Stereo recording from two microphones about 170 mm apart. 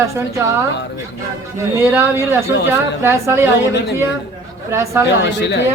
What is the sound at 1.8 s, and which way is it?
A woman's voice, 15° right (ahead or behind).